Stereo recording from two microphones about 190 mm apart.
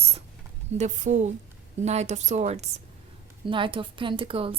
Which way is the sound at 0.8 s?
40° right (ahead or behind).